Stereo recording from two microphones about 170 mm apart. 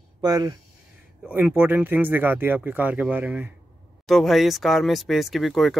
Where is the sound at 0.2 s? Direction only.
20° right (ahead or behind).